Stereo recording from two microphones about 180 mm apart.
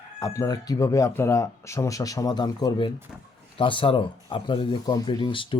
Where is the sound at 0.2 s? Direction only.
20° left (ahead or behind).